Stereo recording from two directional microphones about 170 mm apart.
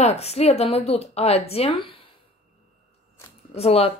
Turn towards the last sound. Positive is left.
turn(degrees=35)  # may be behind; listen again after turning